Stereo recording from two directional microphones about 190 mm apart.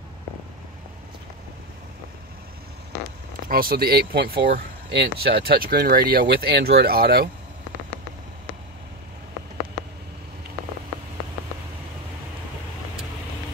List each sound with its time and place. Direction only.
3.4 s speech: 50° right (ahead or behind)